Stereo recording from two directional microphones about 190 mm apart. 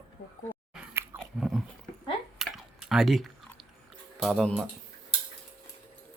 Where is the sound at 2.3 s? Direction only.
Centre (ahead or behind).